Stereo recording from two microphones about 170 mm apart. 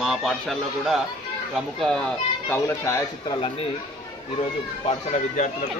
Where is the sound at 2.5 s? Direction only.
15° left (ahead or behind).